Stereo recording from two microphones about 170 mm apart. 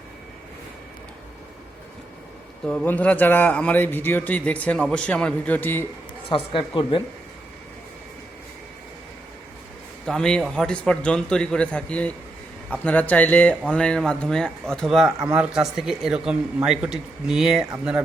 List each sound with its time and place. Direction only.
2.6 s a man's voice: 10° left (ahead or behind)
6.2 s speech: 30° left (ahead or behind)
10.1 s speech: 5° left (ahead or behind)